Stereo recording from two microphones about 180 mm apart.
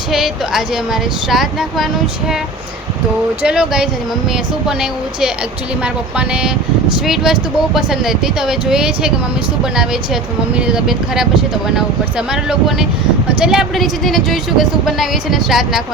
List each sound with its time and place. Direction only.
0.1 s speech: centre (ahead or behind)
3.4 s speech: 5° right (ahead or behind)
5.8 s speech: 5° right (ahead or behind)